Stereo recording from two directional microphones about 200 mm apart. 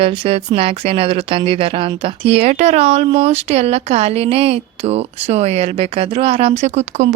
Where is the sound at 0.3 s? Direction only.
30° right (ahead or behind).